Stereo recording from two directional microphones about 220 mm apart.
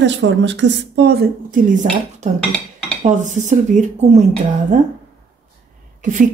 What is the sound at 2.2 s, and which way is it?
Speech, 30° right (ahead or behind).